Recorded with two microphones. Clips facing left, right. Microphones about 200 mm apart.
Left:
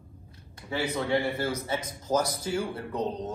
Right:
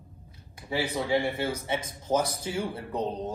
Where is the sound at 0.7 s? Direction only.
Centre (ahead or behind).